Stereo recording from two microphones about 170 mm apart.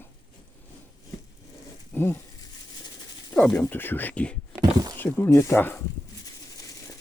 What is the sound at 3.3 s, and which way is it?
Speech, centre (ahead or behind).